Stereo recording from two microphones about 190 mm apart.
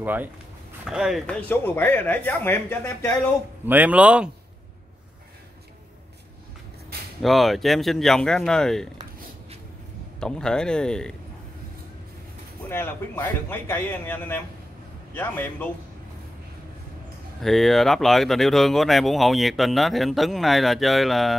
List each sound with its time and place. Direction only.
0.0 s speech: 10° right (ahead or behind)
1.2 s speech: 10° left (ahead or behind)
3.6 s speech: 10° right (ahead or behind)
7.2 s speech: centre (ahead or behind)
10.2 s speech: 5° left (ahead or behind)
12.6 s speech: 10° left (ahead or behind)
17.4 s speech: centre (ahead or behind)